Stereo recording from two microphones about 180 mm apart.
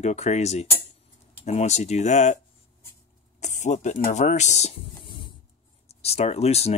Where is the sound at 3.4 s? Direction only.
40° left (ahead or behind).